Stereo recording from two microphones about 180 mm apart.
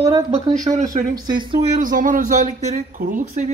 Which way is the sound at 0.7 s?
30° right (ahead or behind).